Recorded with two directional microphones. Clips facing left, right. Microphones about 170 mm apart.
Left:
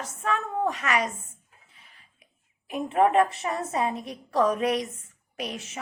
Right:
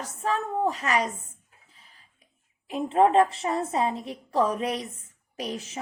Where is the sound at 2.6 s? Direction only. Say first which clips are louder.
Right 1 dB; 25° right (ahead or behind).